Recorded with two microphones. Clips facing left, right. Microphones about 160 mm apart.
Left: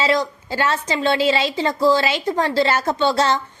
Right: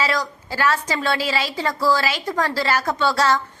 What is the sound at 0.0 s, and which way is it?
A woman's voice, 25° left (ahead or behind).